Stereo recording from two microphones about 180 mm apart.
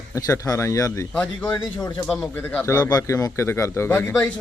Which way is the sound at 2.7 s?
20° left (ahead or behind).